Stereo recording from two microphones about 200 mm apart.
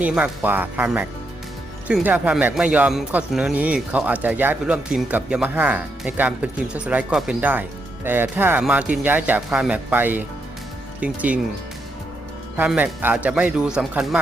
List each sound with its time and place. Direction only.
0.0 s speech: 5° right (ahead or behind)
12.5 s speech: 10° right (ahead or behind)